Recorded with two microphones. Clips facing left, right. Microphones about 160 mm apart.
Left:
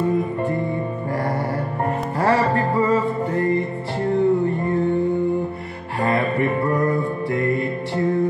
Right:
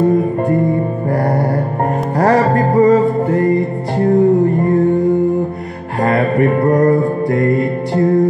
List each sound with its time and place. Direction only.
0.0 s music: 40° right (ahead or behind)
6.0 s music: 45° right (ahead or behind)